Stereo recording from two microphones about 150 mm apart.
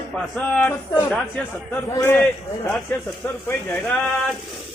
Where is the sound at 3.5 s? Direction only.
10° left (ahead or behind).